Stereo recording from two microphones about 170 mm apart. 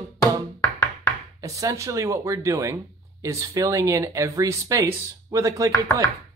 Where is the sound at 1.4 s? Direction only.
20° right (ahead or behind).